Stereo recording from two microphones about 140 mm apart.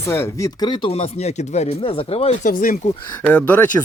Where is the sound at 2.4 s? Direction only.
80° left.